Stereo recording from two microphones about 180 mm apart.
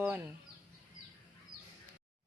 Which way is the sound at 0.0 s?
10° right (ahead or behind).